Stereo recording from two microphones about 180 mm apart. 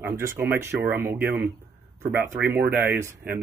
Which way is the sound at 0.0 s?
15° right (ahead or behind).